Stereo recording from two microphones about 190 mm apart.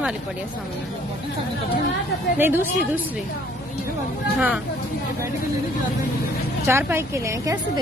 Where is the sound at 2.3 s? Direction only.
10° right (ahead or behind).